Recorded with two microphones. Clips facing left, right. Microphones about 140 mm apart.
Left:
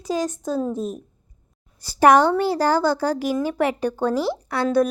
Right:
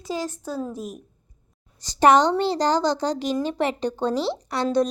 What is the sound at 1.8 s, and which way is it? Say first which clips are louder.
Speech: left 2 dB; 10° left (ahead or behind).